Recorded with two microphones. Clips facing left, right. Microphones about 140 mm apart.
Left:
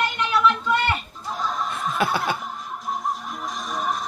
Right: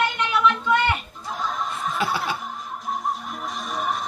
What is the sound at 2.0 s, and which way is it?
Chuckle, 50° left (ahead or behind).